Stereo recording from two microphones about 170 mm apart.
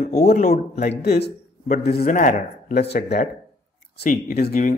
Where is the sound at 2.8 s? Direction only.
70° left (ahead or behind).